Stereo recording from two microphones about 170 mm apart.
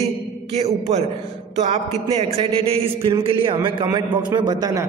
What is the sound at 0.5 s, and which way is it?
A man's voice, 40° right (ahead or behind).